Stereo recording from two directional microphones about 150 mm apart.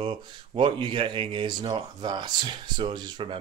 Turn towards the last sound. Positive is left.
turn(degrees=-30)  # may be behind; listen again after turning